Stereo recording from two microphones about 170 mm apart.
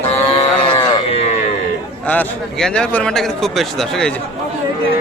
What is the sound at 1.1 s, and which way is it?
Speech, 40° left (ahead or behind).